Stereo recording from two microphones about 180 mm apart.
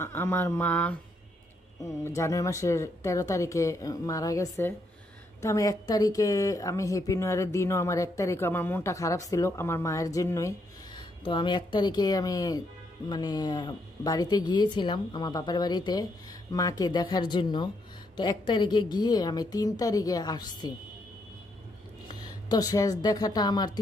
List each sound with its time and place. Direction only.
0.0 s speech: 15° left (ahead or behind)
11.0 s speech: 25° left (ahead or behind)
22.0 s a woman's voice: 20° left (ahead or behind)